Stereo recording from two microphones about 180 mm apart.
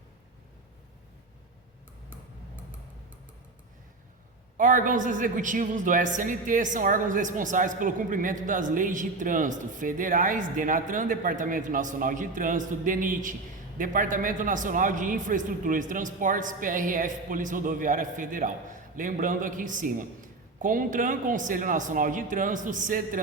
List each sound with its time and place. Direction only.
4.5 s a man's voice: 45° right (ahead or behind)